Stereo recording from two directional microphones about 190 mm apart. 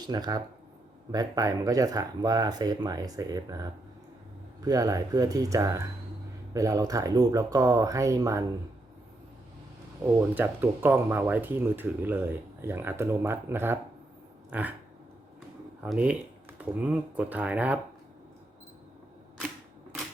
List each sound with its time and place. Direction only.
0.0 s speech: 20° right (ahead or behind)
10.3 s speech: 10° right (ahead or behind)
15.9 s speech: 5° right (ahead or behind)